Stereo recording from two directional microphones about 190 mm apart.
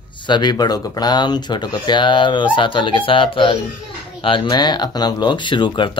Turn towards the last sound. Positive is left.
turn(degrees=25)  # may be behind; listen again after turning